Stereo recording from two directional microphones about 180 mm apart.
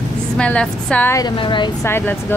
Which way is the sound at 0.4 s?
5° left (ahead or behind).